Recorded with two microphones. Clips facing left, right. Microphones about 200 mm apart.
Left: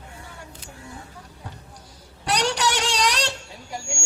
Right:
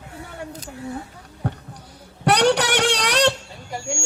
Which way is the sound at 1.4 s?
60° right (ahead or behind).